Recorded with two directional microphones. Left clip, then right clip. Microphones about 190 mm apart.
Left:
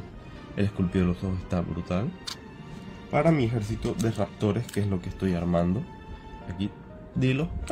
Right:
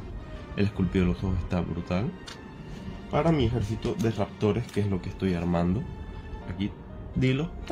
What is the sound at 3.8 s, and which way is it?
Speech, 30° left (ahead or behind).